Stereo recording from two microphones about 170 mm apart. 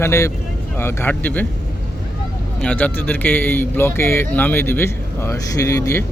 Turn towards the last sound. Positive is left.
turn(degrees=20)  # may be behind; listen again after turning